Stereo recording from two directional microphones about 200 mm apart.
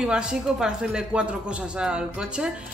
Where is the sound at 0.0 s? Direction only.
5° right (ahead or behind).